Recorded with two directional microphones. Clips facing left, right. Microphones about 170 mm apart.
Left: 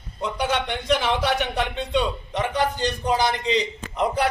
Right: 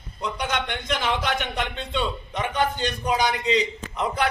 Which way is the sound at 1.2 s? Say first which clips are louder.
Left 3 dB; 10° left (ahead or behind).